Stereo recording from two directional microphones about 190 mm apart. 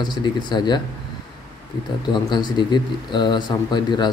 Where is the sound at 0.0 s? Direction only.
20° left (ahead or behind).